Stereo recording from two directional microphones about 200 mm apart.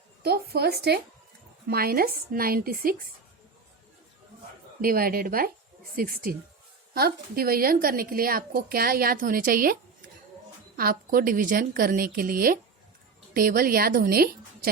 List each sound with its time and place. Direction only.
0.2 s a woman's voice: 50° right (ahead or behind)
4.8 s a woman's voice: 45° right (ahead or behind)
10.8 s a woman's voice: 50° right (ahead or behind)